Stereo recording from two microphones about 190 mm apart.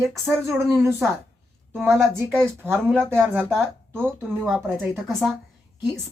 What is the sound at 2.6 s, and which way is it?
Speech, 10° right (ahead or behind).